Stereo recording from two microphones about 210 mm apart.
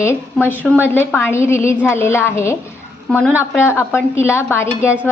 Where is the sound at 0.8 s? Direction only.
10° left (ahead or behind).